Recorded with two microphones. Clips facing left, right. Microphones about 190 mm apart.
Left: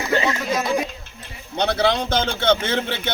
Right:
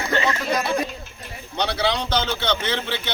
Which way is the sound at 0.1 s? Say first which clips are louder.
Left 1 dB; 5° left (ahead or behind).